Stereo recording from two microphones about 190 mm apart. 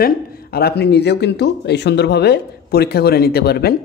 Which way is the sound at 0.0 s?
55° left (ahead or behind).